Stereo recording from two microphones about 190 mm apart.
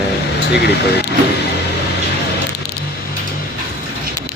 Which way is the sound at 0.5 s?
60° left (ahead or behind).